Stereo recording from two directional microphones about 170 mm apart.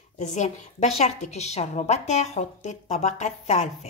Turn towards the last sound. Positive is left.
turn(degrees=40)  # may be behind; listen again after turning